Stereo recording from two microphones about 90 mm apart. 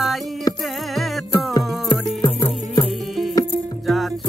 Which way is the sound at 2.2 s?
70° left (ahead or behind).